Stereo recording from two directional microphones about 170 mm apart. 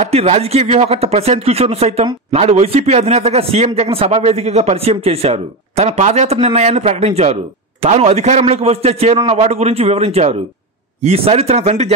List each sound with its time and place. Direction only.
0.0 s a man's voice: 40° right (ahead or behind)